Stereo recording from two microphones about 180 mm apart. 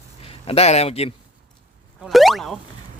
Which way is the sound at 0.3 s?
35° left (ahead or behind).